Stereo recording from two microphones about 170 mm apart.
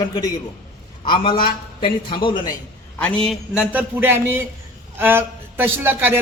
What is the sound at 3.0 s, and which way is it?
A man's voice, 5° left (ahead or behind).